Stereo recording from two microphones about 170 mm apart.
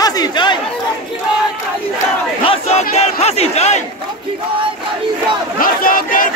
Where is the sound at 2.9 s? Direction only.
40° left (ahead or behind).